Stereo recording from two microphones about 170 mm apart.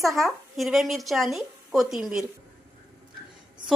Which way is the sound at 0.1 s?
Centre (ahead or behind).